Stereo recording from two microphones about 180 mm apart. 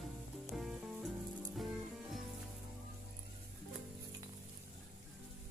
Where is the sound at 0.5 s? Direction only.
Centre (ahead or behind).